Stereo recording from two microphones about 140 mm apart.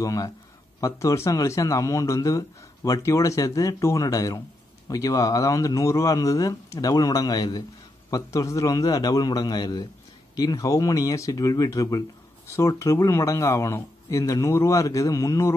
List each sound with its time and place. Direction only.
0.0 s speech: 25° left (ahead or behind)